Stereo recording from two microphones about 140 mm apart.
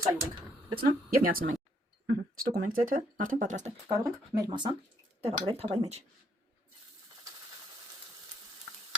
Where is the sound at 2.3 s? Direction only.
90° right; by 3.7 s 60° right (ahead or behind).